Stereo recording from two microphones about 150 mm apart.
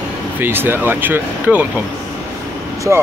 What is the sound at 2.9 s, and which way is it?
Speech, 15° right (ahead or behind).